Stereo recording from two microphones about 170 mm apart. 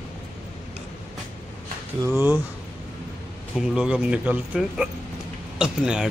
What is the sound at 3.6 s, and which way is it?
Speech, 5° right (ahead or behind).